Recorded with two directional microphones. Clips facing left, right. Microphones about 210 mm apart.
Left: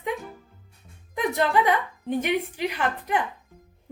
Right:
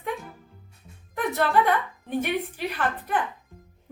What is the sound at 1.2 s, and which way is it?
A woman's voice, 15° left (ahead or behind).